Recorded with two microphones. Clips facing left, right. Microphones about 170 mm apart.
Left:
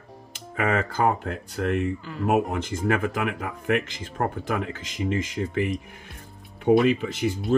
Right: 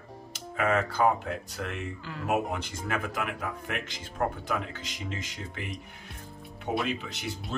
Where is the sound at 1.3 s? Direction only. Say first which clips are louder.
Left 8 dB; 55° left (ahead or behind).